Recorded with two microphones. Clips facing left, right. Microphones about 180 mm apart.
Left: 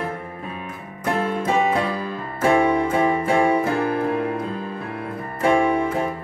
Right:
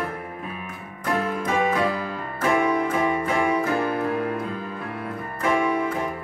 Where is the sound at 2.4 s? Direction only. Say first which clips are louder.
Left 4 dB; 30° left (ahead or behind).